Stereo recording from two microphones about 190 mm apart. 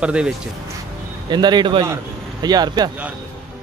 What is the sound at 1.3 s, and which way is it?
A man's voice, 20° right (ahead or behind).